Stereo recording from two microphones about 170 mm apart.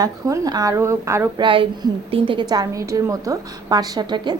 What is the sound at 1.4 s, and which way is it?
A woman's voice, 30° right (ahead or behind).